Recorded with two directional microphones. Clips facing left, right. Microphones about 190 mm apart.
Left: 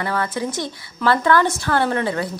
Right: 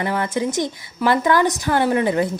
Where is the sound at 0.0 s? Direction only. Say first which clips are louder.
Right 2 dB; 20° right (ahead or behind).